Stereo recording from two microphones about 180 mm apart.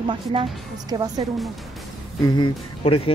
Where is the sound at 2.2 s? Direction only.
25° left (ahead or behind).